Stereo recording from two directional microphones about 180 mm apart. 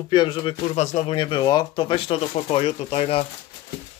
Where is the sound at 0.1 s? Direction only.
25° left (ahead or behind).